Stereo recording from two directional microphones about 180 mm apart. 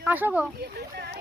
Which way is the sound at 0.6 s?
60° right (ahead or behind).